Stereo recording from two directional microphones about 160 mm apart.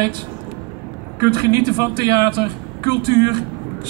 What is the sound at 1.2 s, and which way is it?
A man's voice, 20° right (ahead or behind).